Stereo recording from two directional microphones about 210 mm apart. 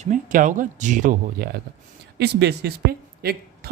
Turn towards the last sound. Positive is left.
turn(degrees=-45)  # may be behind; listen again after turning